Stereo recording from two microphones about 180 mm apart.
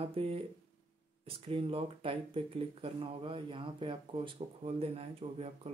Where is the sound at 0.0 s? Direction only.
30° right (ahead or behind).